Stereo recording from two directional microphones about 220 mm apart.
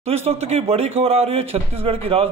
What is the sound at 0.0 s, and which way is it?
Speech, 25° right (ahead or behind).